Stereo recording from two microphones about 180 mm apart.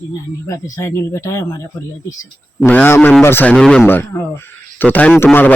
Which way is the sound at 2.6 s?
10° left (ahead or behind).